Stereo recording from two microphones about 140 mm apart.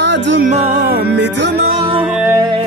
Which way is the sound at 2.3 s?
30° right (ahead or behind).